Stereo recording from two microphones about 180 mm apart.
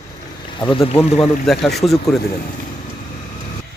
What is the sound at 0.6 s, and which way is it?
Speech, 30° left (ahead or behind).